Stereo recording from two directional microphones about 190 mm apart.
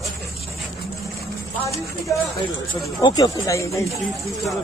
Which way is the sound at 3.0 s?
20° left (ahead or behind).